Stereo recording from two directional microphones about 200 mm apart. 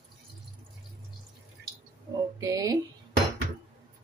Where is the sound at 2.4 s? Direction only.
15° right (ahead or behind).